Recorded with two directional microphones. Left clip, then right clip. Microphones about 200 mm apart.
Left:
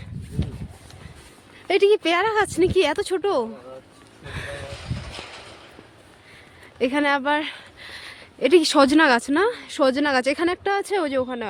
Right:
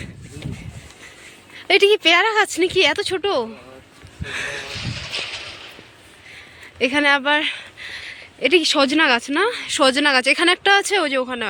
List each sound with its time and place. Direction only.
1.5 s speech: 5° left (ahead or behind)
4.3 s music: centre (ahead or behind)
4.7 s a sound: 55° left (ahead or behind)
6.7 s speech: 10° left (ahead or behind)
10.4 s speech: 5° left (ahead or behind)